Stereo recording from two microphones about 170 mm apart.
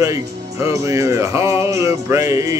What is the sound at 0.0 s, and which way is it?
Music, 15° right (ahead or behind).